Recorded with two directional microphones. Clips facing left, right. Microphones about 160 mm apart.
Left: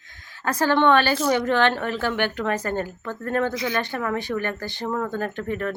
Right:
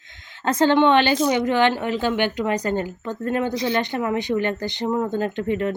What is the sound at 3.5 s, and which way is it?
Speech, 25° right (ahead or behind).